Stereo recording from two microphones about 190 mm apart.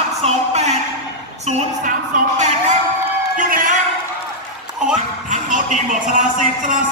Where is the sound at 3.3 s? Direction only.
45° right (ahead or behind).